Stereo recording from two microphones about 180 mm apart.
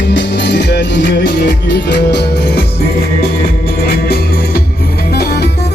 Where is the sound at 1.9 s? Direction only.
70° left (ahead or behind).